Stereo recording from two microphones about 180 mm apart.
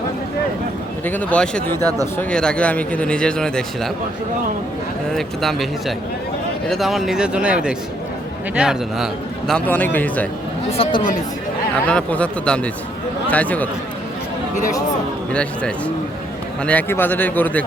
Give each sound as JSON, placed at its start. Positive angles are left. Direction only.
{"t": 1.0, "sound": "speech", "side_deg": 10}
{"t": 5.1, "sound": "speech", "side_deg": 0}
{"t": 6.7, "sound": "speech", "side_deg": 0}
{"t": 9.5, "sound": "speech", "side_deg": 5}
{"t": 10.7, "sound": "speech", "side_deg": 30}
{"t": 11.7, "sound": "speech", "side_deg": 5}
{"t": 14.5, "sound": "speech", "side_deg": 45}
{"t": 15.3, "sound": "speech", "side_deg": 5}